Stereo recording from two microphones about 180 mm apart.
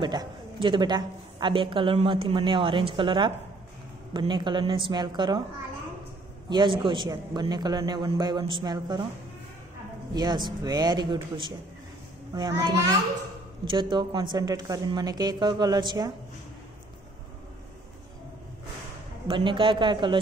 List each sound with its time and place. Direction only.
0.0 s a woman's voice: 25° right (ahead or behind)
6.5 s a woman's voice: 25° right (ahead or behind)
10.1 s a woman's voice: 25° right (ahead or behind)
19.2 s a woman's voice: 25° right (ahead or behind)